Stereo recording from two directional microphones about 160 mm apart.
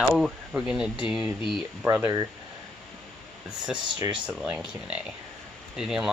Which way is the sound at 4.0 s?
30° right (ahead or behind).